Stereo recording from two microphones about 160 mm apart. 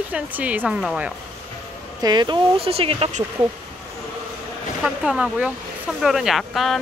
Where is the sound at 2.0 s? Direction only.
25° right (ahead or behind).